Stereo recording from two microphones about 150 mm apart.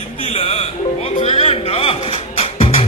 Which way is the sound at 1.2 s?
40° left (ahead or behind).